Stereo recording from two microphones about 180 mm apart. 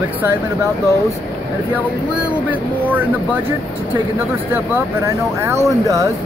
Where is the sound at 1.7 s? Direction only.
10° right (ahead or behind).